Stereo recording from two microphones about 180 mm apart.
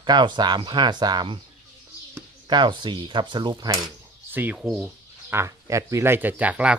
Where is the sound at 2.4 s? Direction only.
25° right (ahead or behind).